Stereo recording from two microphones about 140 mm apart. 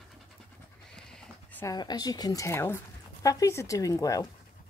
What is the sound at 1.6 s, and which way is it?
Speech, 25° left (ahead or behind).